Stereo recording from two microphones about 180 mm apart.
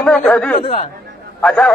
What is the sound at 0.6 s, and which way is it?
Speech, 30° left (ahead or behind).